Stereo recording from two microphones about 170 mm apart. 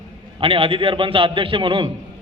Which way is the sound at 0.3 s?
35° right (ahead or behind).